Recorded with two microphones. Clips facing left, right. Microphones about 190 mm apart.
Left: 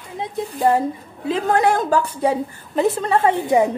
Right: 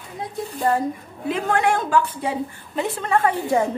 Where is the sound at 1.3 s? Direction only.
35° left (ahead or behind); by 3.7 s 15° left (ahead or behind).